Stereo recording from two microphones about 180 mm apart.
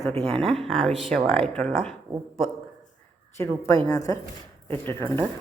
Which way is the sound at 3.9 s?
20° left (ahead or behind).